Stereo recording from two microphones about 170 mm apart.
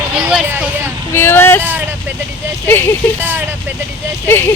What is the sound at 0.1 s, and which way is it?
Speech, 5° right (ahead or behind).